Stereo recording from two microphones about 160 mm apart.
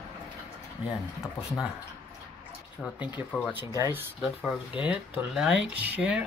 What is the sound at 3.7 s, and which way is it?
Speech, 15° right (ahead or behind).